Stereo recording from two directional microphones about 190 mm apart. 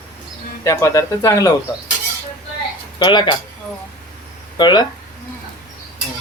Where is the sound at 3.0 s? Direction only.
25° left (ahead or behind).